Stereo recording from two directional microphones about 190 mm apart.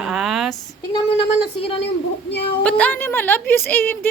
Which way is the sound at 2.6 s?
5° left (ahead or behind).